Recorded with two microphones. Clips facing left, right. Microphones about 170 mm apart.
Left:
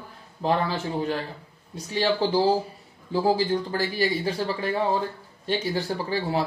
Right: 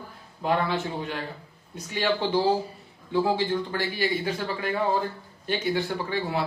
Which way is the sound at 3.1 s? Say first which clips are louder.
Left 2 dB; 35° left (ahead or behind).